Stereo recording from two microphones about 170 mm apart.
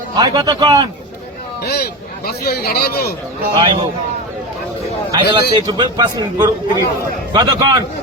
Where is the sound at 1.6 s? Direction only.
65° left (ahead or behind).